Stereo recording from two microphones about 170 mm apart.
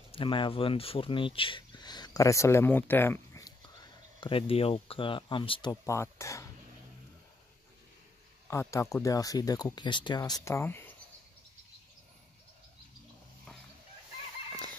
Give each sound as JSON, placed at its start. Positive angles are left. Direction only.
{"t": 0.1, "sound": "speech", "side_deg": 30}
{"t": 8.5, "sound": "speech", "side_deg": 15}